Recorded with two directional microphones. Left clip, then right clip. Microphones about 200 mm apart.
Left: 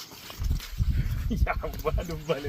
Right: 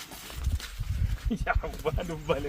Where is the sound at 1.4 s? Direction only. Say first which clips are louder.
Even; 55° left (ahead or behind).